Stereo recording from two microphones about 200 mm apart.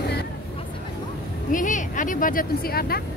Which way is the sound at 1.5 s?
40° left (ahead or behind).